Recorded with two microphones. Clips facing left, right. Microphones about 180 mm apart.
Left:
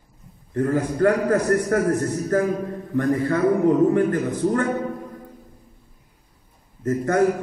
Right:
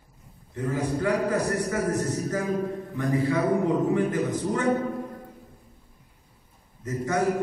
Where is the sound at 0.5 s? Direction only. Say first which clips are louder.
Left 6 dB; 55° left (ahead or behind).